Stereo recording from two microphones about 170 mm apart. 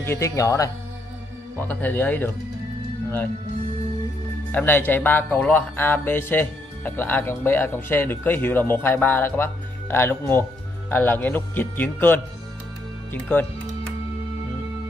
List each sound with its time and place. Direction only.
0.0 s speech: 15° left (ahead or behind)
1.7 s speech: 10° left (ahead or behind)
4.5 s speech: 10° left (ahead or behind)